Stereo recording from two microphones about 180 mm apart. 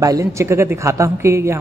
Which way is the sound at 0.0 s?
20° right (ahead or behind).